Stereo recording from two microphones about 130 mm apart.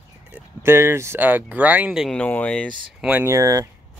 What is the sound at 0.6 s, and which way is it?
Speech, 20° right (ahead or behind).